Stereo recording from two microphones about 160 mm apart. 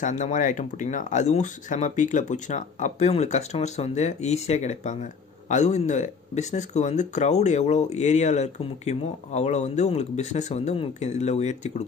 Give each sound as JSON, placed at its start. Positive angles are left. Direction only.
{"t": 0.0, "sound": "speech", "side_deg": 50}